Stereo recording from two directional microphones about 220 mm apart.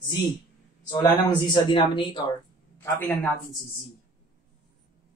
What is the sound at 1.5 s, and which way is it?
Speech, 20° left (ahead or behind).